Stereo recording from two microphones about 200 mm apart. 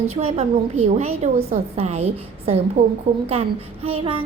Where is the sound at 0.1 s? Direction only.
30° right (ahead or behind).